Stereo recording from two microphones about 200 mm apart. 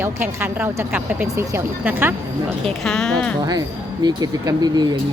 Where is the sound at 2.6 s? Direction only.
5° left (ahead or behind).